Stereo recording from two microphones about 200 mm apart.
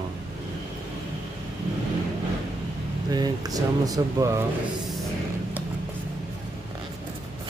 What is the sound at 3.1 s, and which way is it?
Speech, 20° right (ahead or behind).